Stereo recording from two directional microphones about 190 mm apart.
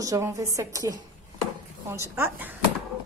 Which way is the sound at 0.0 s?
15° right (ahead or behind).